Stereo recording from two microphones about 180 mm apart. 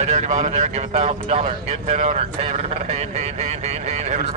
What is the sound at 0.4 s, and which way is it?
Speech, 35° right (ahead or behind).